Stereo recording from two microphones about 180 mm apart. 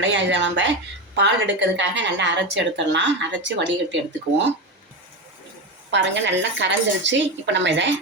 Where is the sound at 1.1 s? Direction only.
80° right.